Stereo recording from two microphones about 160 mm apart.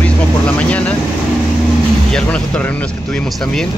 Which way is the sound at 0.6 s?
10° left (ahead or behind).